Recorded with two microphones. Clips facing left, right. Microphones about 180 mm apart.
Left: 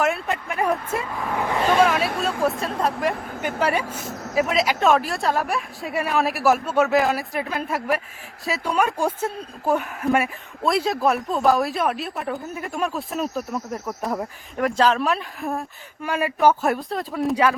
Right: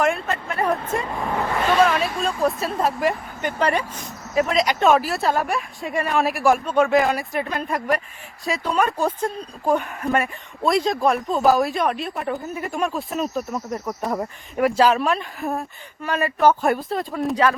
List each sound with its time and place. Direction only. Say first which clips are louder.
0.3 s speech: even; 10° left (ahead or behind)
1.1 s speech: right 2 dB; 20° right (ahead or behind)
1.4 s a sound: even; 10° left (ahead or behind)
2.6 s speech: right 1 dB; 5° right (ahead or behind)
3.6 s speech: right 1 dB; 5° left (ahead or behind)
16.0 s speech: right 1 dB; 10° left (ahead or behind)